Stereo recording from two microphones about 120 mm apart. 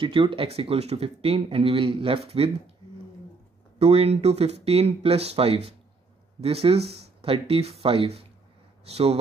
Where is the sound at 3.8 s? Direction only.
55° right (ahead or behind).